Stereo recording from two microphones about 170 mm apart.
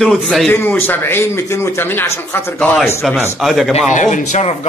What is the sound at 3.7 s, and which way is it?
Speech, 45° left (ahead or behind).